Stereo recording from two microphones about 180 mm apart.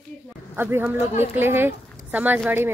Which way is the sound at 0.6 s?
10° right (ahead or behind).